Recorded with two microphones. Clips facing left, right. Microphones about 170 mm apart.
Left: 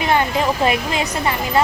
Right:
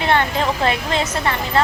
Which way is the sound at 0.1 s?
10° left (ahead or behind).